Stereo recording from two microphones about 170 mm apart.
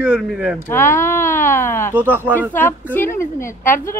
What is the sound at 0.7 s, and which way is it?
Speech, 10° left (ahead or behind).